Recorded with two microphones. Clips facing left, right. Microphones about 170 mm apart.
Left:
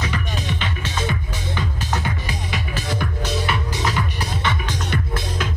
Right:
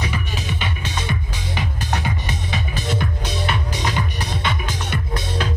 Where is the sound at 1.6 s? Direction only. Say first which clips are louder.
Right 1 dB; 70° right (ahead or behind).